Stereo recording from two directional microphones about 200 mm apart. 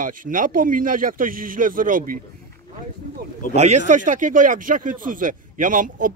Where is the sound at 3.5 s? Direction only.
35° right (ahead or behind).